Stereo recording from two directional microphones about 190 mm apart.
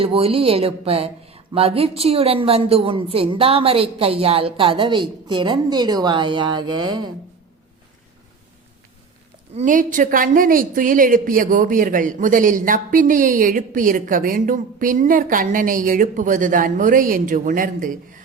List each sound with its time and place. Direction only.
0.0 s speech: 30° right (ahead or behind)
9.6 s a woman's voice: 45° right (ahead or behind)